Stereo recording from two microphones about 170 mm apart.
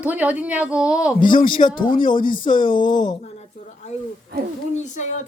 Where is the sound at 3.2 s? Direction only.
40° left (ahead or behind).